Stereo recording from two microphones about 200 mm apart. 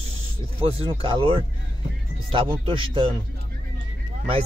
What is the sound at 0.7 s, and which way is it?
Speech, 25° right (ahead or behind).